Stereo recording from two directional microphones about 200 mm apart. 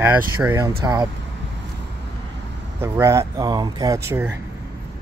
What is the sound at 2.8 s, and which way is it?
Speech, 15° right (ahead or behind).